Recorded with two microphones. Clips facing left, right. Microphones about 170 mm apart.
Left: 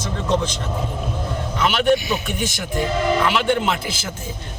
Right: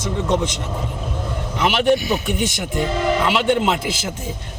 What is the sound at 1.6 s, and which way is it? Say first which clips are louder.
Speech: right 1 dB; 20° right (ahead or behind).